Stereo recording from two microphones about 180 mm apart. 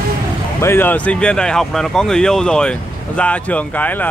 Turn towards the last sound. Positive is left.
turn(degrees=10)  # may be behind; listen again after turning